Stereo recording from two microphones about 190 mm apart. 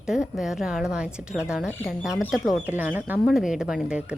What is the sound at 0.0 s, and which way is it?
Speech, centre (ahead or behind).